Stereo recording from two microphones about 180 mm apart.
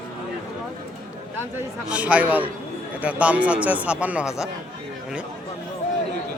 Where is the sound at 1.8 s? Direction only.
5° right (ahead or behind).